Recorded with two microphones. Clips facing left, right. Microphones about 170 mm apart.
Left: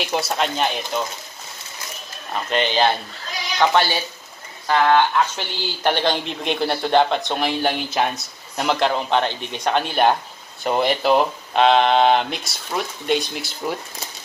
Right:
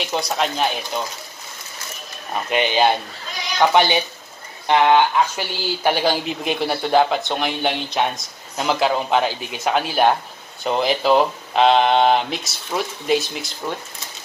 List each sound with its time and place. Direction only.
0.0 s speech: centre (ahead or behind)
2.5 s speech: 10° right (ahead or behind)